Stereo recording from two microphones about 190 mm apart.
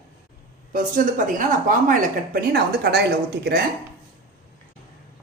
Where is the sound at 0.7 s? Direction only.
45° right (ahead or behind).